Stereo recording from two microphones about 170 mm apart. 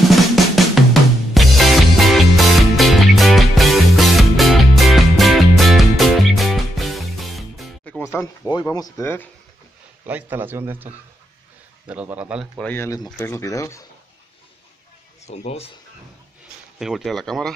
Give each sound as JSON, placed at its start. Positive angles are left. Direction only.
{"t": 0.1, "sound": "drum", "side_deg": 0}
{"t": 1.3, "sound": "music", "side_deg": 0}
{"t": 8.0, "sound": "speech", "side_deg": 15}
{"t": 10.0, "sound": "a man's voice", "side_deg": -10}
{"t": 12.6, "sound": "speech", "side_deg": 15}
{"t": 15.2, "sound": "a man's voice", "side_deg": 40}
{"t": 16.7, "sound": "speech", "side_deg": 0}